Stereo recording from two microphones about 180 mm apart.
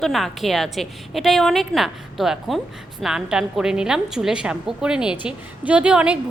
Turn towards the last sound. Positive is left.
turn(degrees=-5)  # may be behind; listen again after turning